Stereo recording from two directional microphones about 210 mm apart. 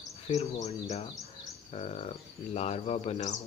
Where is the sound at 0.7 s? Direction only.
30° left (ahead or behind).